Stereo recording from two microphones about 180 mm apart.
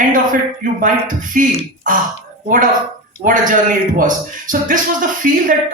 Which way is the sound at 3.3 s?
50° right (ahead or behind).